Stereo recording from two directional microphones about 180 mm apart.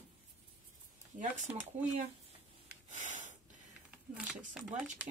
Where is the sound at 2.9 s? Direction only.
45° right (ahead or behind).